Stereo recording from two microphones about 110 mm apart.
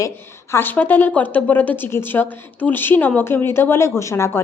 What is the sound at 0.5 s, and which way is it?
A woman's voice, 15° left (ahead or behind).